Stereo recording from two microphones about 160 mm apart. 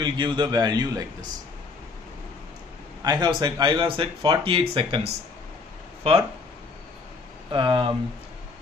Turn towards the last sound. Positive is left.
turn(degrees=-30)  # may be behind; listen again after turning